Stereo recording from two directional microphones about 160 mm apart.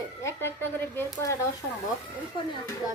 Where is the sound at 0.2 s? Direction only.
15° left (ahead or behind).